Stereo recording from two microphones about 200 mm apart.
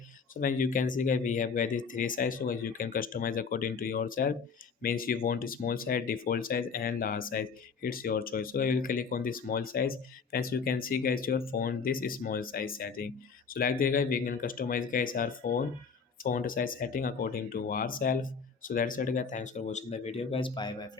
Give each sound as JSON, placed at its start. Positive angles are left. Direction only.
{"t": 0.3, "sound": "speech", "side_deg": 40}